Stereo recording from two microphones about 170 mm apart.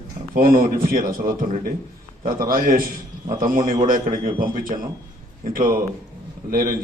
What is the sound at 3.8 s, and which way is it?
A man's voice, 55° right (ahead or behind).